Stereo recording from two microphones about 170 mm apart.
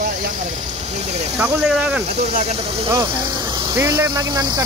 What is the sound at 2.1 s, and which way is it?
Speech, 40° right (ahead or behind).